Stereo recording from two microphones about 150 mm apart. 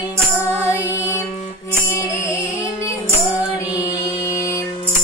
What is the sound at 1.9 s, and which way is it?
Music, 20° left (ahead or behind).